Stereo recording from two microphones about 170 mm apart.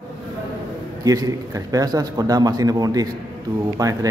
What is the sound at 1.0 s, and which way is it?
Speech, 20° right (ahead or behind).